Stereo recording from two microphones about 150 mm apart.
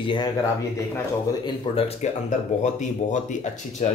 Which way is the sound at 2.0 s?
50° left (ahead or behind).